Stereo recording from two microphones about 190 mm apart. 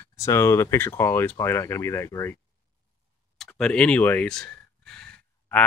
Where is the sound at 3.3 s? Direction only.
5° left (ahead or behind).